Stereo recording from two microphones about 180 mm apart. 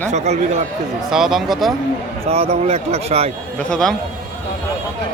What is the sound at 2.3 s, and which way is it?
Speech, 35° right (ahead or behind).